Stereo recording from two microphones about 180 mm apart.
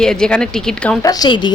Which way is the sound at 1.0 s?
20° left (ahead or behind).